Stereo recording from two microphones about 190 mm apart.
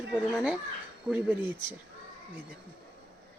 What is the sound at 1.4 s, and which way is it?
Speech, 25° left (ahead or behind).